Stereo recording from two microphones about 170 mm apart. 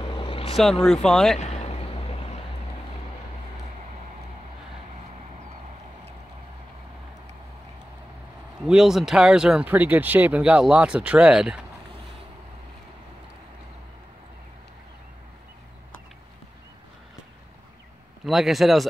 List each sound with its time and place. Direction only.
0.1 s vehicle: 30° left (ahead or behind)
0.8 s speech: centre (ahead or behind)
1.4 s a sound: 40° left (ahead or behind)
8.6 s speech: 5° right (ahead or behind)
18.2 s speech: centre (ahead or behind)